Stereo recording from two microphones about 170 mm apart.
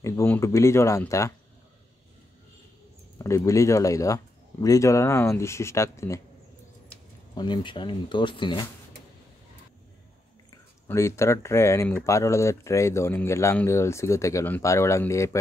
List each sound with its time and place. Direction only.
0.0 s speech: 15° left (ahead or behind)
3.3 s speech: 20° left (ahead or behind)
7.3 s speech: 25° left (ahead or behind)
10.9 s speech: 15° left (ahead or behind)